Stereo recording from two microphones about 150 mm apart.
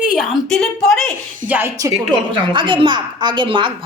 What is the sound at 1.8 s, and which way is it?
A woman's voice, 25° right (ahead or behind).